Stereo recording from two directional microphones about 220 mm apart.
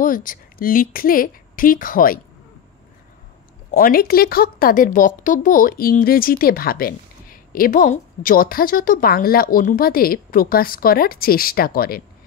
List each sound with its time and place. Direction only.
0.0 s a woman's voice: 40° left (ahead or behind)
3.7 s a woman's voice: 40° left (ahead or behind)